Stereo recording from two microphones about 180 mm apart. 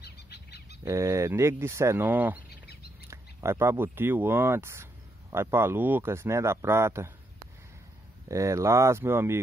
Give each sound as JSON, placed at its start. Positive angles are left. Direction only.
{"t": 0.0, "sound": "bird", "side_deg": 65}
{"t": 0.8, "sound": "speech", "side_deg": -15}
{"t": 2.6, "sound": "bird", "side_deg": 65}
{"t": 3.1, "sound": "speech", "side_deg": -15}
{"t": 8.3, "sound": "speech", "side_deg": -15}